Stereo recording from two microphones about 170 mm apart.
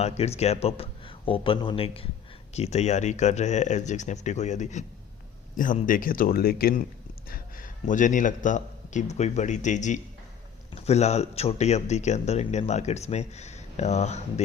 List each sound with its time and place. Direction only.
0.0 s a man's voice: 40° left (ahead or behind)